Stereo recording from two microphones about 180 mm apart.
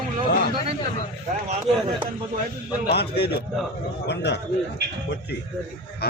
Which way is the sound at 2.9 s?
65° left (ahead or behind).